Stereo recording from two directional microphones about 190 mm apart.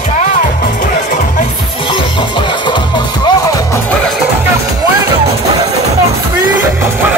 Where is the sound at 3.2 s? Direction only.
20° left (ahead or behind).